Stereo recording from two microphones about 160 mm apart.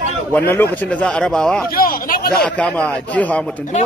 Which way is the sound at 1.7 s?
65° left (ahead or behind).